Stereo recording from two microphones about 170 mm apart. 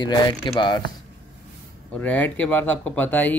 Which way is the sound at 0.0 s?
25° left (ahead or behind).